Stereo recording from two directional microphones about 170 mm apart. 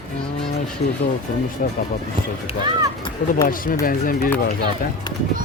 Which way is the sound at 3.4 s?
55° left (ahead or behind).